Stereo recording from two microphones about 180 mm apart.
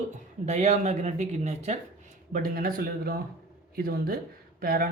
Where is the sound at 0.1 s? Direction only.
40° right (ahead or behind).